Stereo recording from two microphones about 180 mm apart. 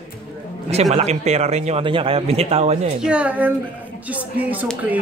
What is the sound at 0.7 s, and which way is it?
A man's voice, 35° right (ahead or behind).